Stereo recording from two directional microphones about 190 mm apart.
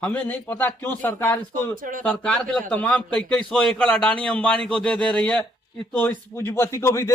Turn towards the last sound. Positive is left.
turn(degrees=15)  # may be behind; listen again after turning